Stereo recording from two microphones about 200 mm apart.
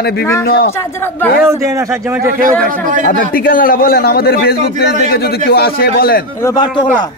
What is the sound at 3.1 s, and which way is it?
A man's voice, 45° left (ahead or behind).